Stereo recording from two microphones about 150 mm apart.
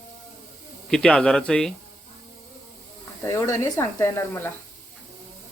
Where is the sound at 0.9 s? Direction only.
5° left (ahead or behind).